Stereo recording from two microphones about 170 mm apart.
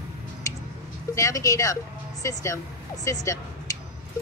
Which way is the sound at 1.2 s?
20° left (ahead or behind).